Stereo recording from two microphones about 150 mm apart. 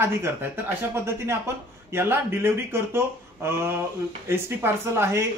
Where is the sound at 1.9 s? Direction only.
15° right (ahead or behind).